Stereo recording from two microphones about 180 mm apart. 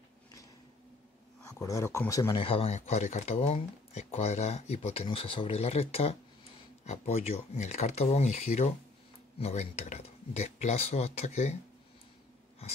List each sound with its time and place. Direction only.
1.5 s speech: 15° left (ahead or behind)
2.3 s speech: 30° left (ahead or behind)